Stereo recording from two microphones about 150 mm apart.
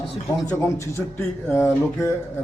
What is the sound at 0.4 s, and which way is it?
A man's voice, 20° left (ahead or behind).